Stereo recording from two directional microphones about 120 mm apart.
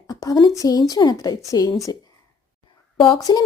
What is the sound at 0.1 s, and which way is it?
Speech, 30° left (ahead or behind).